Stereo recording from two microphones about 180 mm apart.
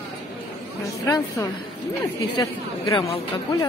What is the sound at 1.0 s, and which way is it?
A woman's voice, 20° left (ahead or behind).